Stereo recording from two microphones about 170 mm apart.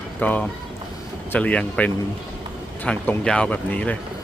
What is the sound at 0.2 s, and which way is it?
Speech, 10° left (ahead or behind).